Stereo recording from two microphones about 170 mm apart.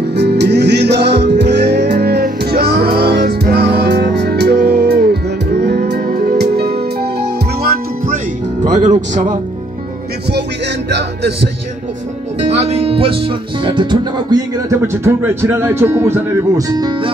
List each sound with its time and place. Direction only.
0.1 s music: 80° right
8.6 s music: 45° right (ahead or behind)
10.9 s music: 80° right
12.4 s speech: 40° right (ahead or behind)